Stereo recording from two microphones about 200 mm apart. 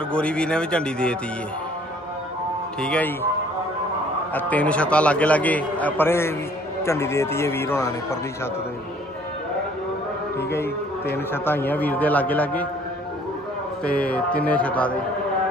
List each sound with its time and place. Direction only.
0.1 s speech: 5° left (ahead or behind)
2.8 s speech: 5° left (ahead or behind)
4.3 s speech: 10° left (ahead or behind)
10.3 s speech: 10° left (ahead or behind)
13.8 s speech: 5° left (ahead or behind)